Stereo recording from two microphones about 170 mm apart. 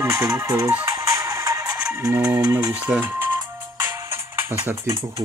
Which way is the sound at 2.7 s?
10° right (ahead or behind).